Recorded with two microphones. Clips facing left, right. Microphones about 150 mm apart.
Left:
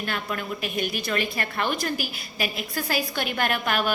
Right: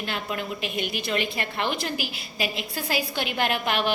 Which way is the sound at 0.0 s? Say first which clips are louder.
Even; 25° right (ahead or behind).